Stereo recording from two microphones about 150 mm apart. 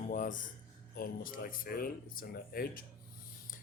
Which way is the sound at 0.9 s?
75° left (ahead or behind).